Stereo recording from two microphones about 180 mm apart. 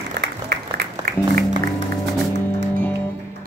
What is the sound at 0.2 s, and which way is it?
Music, 60° right (ahead or behind).